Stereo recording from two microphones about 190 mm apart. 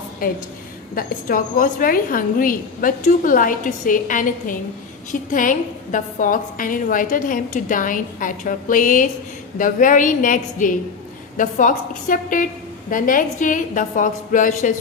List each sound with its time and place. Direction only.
0.9 s a woman's voice: 45° left (ahead or behind)